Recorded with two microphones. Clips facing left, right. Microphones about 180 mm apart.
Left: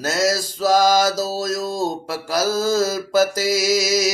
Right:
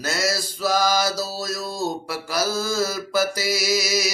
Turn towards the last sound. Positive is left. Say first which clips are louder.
# left 5 dB
turn(degrees=45)  # may be behind; listen again after turning